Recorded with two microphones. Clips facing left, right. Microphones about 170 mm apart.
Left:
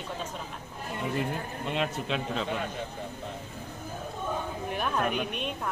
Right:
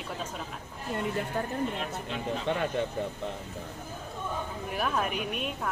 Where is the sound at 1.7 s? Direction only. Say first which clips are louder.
Left 5 dB; 90° left.